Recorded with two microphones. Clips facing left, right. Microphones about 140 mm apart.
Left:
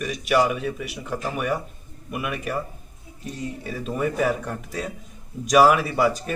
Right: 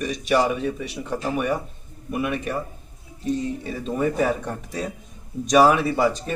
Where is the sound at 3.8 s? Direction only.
30° right (ahead or behind).